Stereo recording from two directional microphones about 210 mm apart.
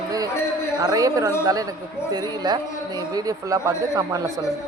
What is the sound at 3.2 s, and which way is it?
Speech, 15° right (ahead or behind).